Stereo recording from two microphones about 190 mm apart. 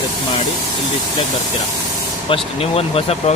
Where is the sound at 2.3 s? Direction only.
30° left (ahead or behind).